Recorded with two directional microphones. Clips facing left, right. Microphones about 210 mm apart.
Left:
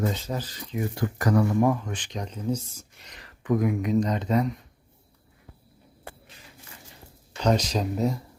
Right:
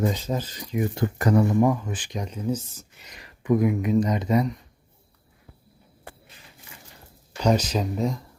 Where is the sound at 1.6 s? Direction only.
5° right (ahead or behind).